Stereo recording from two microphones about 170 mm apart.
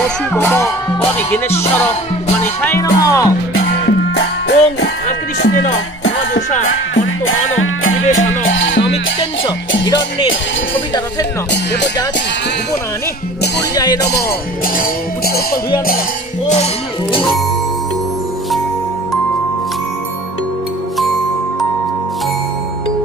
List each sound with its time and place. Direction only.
0.3 s speech: 15° left (ahead or behind)
2.6 s speech: 15° left (ahead or behind)
4.1 s music: 85° left
5.5 s speech: 45° left (ahead or behind)
8.5 s music: 90° left
9.8 s speech: 25° left (ahead or behind)
13.7 s speech: 20° left (ahead or behind)
14.8 s music: 60° left (ahead or behind)